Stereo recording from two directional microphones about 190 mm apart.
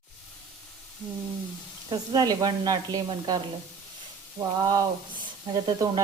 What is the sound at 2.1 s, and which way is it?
Speech, 20° right (ahead or behind).